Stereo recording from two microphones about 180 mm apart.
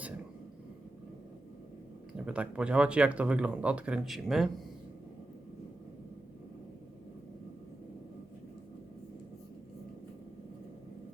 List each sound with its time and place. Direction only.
2.1 s speech: 5° right (ahead or behind)